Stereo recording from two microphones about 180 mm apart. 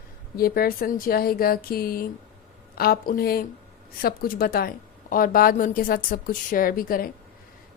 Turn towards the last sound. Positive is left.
turn(degrees=55)  # may be behind; listen again after turning